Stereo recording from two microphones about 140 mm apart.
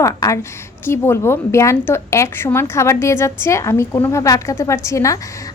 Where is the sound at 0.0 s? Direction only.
20° left (ahead or behind).